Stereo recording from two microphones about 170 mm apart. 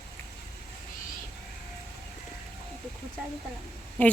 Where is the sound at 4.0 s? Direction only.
10° left (ahead or behind).